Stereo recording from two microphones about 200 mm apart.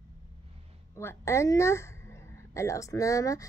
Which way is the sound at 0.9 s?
15° left (ahead or behind).